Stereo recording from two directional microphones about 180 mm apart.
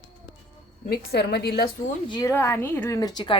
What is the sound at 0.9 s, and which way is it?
Speech, 60° left (ahead or behind).